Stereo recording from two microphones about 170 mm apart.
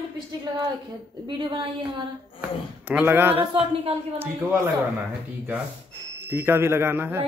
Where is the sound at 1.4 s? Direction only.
30° right (ahead or behind).